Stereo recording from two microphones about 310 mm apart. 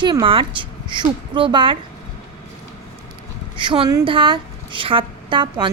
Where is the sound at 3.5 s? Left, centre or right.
Centre.